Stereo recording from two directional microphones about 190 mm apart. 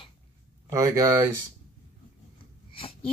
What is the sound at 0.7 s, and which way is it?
Speech, 15° right (ahead or behind).